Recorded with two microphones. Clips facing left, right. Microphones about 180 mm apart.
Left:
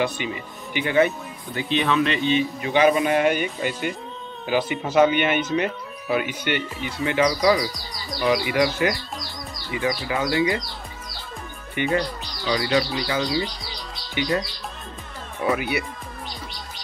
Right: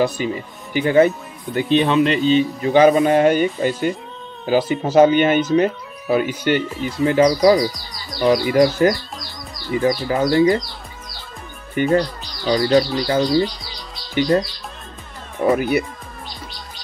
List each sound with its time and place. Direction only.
0.0 s speech: 40° right (ahead or behind)
1.5 s speech: 50° right (ahead or behind)
1.8 s speech: 35° right (ahead or behind)
11.7 s speech: 40° right (ahead or behind)
15.4 s speech: 45° right (ahead or behind)